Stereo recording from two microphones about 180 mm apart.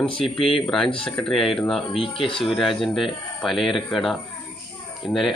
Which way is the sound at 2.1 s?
30° left (ahead or behind).